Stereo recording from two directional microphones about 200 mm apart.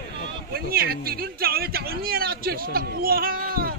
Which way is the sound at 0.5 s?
50° right (ahead or behind).